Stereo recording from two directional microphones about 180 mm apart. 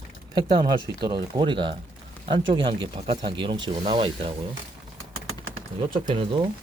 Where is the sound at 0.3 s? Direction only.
25° right (ahead or behind).